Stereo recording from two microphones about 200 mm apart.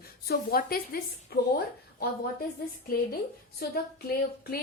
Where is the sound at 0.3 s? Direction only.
50° left (ahead or behind).